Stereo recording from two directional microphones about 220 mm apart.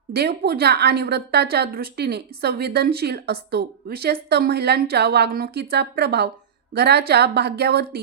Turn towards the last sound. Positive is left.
turn(degrees=-45)  # may be behind; listen again after turning